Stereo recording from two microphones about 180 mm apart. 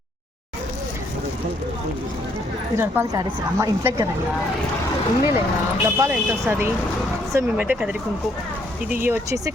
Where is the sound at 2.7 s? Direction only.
10° right (ahead or behind).